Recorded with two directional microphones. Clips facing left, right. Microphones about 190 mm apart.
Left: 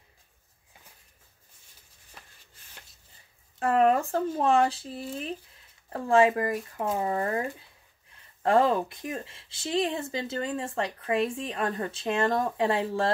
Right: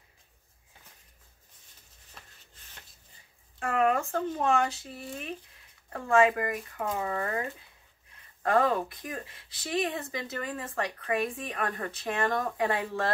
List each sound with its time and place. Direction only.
2.2 s chopping: 10° left (ahead or behind)
3.5 s speech: 35° left (ahead or behind)